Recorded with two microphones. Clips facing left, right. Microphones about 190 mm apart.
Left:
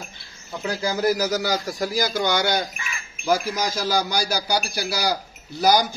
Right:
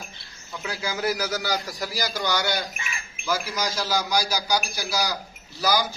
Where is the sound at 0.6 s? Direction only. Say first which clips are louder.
Left 5 dB; 40° left (ahead or behind).